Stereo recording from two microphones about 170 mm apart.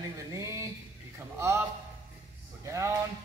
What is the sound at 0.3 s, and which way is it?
Music, 15° right (ahead or behind).